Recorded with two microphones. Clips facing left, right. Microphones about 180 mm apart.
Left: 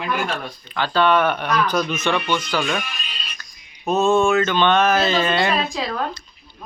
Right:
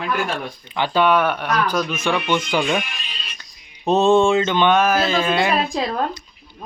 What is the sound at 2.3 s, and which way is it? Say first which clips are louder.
Speech: right 2 dB; 25° right (ahead or behind).